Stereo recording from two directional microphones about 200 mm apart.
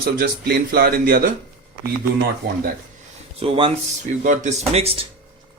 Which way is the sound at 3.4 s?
25° right (ahead or behind).